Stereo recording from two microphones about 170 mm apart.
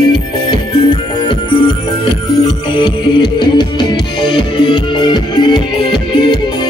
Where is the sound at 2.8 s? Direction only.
25° left (ahead or behind).